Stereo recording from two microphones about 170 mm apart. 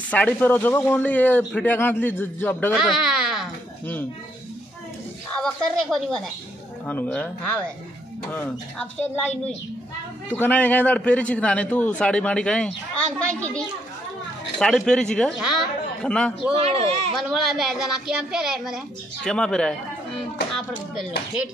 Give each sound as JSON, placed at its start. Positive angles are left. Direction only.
{"t": 0.1, "sound": "a man's voice", "side_deg": 10}
{"t": 2.7, "sound": "a sound", "side_deg": 0}
{"t": 5.3, "sound": "a man's voice", "side_deg": 0}
{"t": 10.3, "sound": "a man's voice", "side_deg": 10}
{"t": 16.5, "sound": "speech", "side_deg": -35}
{"t": 17.2, "sound": "speech", "side_deg": 0}